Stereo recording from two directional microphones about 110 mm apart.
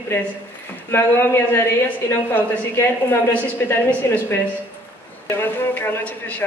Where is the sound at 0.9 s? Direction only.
20° left (ahead or behind).